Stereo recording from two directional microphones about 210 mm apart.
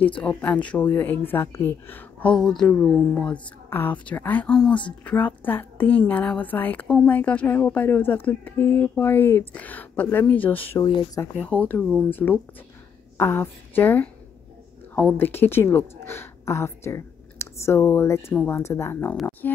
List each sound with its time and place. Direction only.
0.2 s a woman's voice: 5° left (ahead or behind)
10.9 s speech: 25° left (ahead or behind)
11.3 s a woman's voice: 5° left (ahead or behind)